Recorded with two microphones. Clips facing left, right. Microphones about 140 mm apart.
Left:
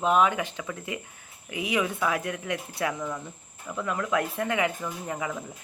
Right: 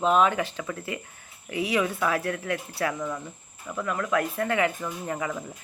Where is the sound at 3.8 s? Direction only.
15° left (ahead or behind).